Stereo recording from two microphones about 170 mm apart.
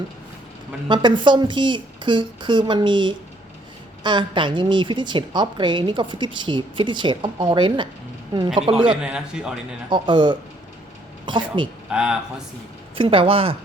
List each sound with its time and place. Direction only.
0.9 s a woman's voice: 25° right (ahead or behind)
9.0 s a man's voice: 5° right (ahead or behind)
9.9 s a woman's voice: 30° right (ahead or behind)
11.9 s speech: 5° right (ahead or behind)
13.0 s speech: 30° right (ahead or behind)